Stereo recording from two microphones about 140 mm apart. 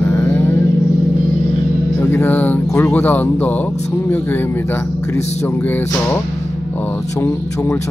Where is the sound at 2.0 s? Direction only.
15° left (ahead or behind).